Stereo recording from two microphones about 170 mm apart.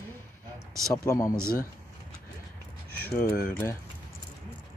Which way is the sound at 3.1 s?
60° left (ahead or behind).